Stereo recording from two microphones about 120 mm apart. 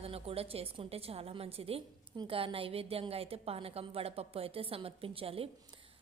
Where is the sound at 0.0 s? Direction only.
55° right (ahead or behind).